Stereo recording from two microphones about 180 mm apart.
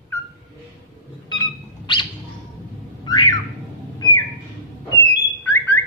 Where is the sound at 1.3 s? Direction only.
25° left (ahead or behind).